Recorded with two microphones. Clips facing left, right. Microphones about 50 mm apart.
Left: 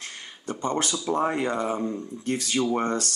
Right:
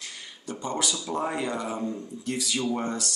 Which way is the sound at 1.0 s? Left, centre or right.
Left.